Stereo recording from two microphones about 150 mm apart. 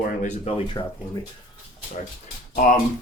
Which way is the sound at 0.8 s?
25° left (ahead or behind).